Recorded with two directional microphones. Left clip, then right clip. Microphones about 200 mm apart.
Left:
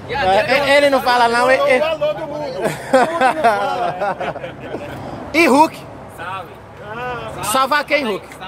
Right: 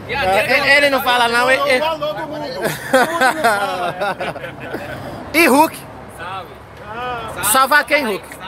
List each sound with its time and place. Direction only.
0.1 s speech: 20° left (ahead or behind); by 4.2 s centre (ahead or behind)
5.3 s speech: centre (ahead or behind)
7.4 s speech: centre (ahead or behind)